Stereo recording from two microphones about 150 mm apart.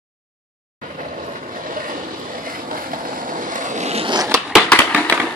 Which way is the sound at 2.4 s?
65° right (ahead or behind).